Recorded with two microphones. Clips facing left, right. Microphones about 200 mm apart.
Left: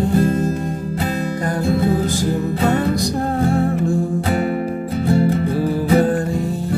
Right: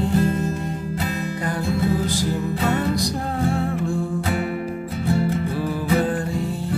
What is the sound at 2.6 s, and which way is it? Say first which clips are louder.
Music: left 4 dB; 50° left (ahead or behind).